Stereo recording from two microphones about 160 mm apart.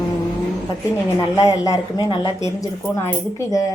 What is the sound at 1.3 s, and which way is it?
A woman's voice, 20° left (ahead or behind).